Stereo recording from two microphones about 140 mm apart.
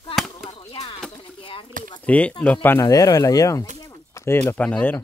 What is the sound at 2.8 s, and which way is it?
Speech, 30° left (ahead or behind).